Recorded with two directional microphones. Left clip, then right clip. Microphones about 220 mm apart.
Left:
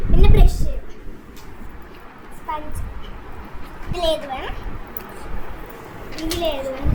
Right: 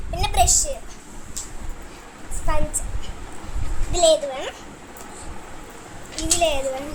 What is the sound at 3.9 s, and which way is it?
Speech, 25° right (ahead or behind).